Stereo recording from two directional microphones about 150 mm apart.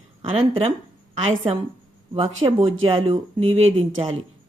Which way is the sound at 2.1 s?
40° right (ahead or behind).